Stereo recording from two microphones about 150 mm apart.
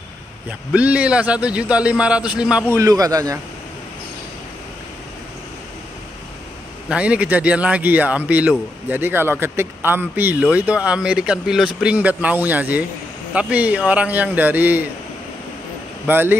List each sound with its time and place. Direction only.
0.5 s speech: 10° right (ahead or behind)
2.7 s a man's voice: 20° right (ahead or behind)
6.9 s speech: 10° right (ahead or behind)
16.1 s speech: 15° right (ahead or behind)